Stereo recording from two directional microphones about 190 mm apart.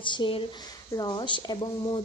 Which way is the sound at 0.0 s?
25° left (ahead or behind).